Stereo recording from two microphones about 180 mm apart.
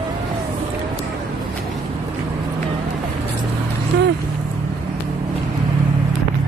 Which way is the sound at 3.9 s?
75° right (ahead or behind).